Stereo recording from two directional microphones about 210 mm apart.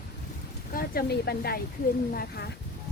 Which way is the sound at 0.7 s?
45° left (ahead or behind).